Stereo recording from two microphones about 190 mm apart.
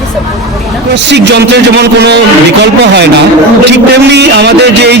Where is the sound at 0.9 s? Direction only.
65° right (ahead or behind).